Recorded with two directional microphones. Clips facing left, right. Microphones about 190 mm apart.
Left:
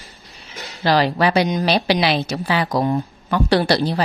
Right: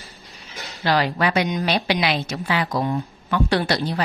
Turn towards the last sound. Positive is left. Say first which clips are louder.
# left 4 dB
turn(degrees=35)  # may be behind; listen again after turning